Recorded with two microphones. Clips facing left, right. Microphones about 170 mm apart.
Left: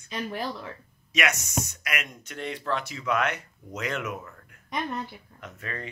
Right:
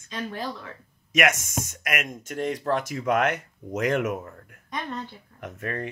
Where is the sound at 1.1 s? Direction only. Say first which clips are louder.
Right 5 dB; 50° right (ahead or behind).